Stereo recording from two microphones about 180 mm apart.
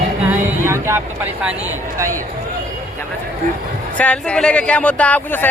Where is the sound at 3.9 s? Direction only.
5° left (ahead or behind).